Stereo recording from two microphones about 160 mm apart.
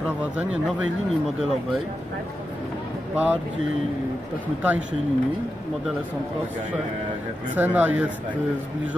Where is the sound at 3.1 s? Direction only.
10° right (ahead or behind).